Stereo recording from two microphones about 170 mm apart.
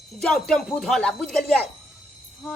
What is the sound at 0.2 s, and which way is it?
Speech, 5° left (ahead or behind).